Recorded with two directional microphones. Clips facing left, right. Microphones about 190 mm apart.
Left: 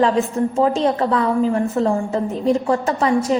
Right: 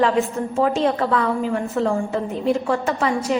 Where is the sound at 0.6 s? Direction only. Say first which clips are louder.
Left 1 dB; 30° left (ahead or behind).